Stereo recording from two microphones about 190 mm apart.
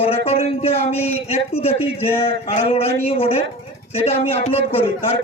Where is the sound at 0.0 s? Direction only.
30° left (ahead or behind).